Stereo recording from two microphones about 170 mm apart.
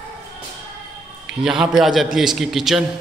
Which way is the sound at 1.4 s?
5° right (ahead or behind).